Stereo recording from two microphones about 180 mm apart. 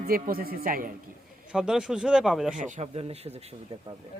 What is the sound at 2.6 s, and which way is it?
Speech, 40° right (ahead or behind).